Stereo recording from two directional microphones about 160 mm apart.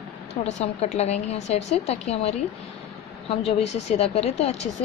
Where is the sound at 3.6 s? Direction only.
45° left (ahead or behind).